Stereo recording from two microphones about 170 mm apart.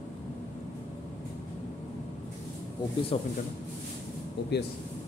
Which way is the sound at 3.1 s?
35° left (ahead or behind).